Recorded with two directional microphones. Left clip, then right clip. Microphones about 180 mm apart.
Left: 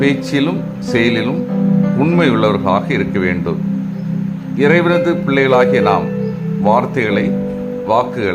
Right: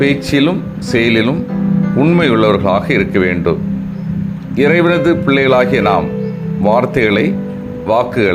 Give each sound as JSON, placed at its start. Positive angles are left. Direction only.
{"t": 0.0, "sound": "speech", "side_deg": -20}
{"t": 4.5, "sound": "speech", "side_deg": -20}